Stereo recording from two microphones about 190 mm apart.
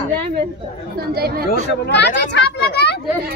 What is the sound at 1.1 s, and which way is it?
Speech, 55° right (ahead or behind).